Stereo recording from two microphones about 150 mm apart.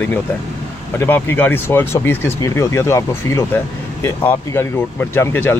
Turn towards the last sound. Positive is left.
turn(degrees=15)  # may be behind; listen again after turning